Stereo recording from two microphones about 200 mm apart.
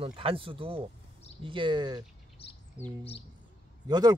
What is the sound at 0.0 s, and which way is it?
Speech, 30° right (ahead or behind).